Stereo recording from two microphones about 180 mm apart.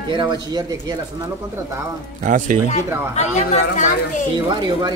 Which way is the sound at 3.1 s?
40° left (ahead or behind).